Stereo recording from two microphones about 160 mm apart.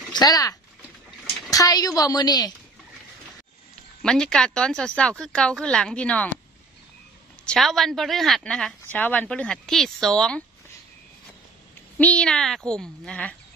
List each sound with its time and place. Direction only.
0.1 s a woman's voice: 25° left (ahead or behind)
4.0 s speech: 5° left (ahead or behind)
7.4 s speech: centre (ahead or behind)
12.0 s speech: 5° left (ahead or behind)